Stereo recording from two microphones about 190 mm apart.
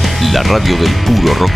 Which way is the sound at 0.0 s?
Centre (ahead or behind).